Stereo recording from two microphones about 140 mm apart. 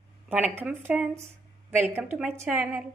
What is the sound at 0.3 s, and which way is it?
A woman's voice, 10° right (ahead or behind).